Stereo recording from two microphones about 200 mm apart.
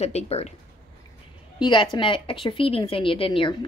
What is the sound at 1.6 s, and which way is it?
A woman's voice, 25° left (ahead or behind).